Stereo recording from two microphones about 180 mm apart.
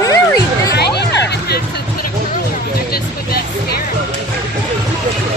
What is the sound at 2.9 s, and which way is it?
Music, 60° left (ahead or behind).